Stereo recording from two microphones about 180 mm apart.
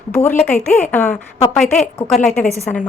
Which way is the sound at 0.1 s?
10° left (ahead or behind).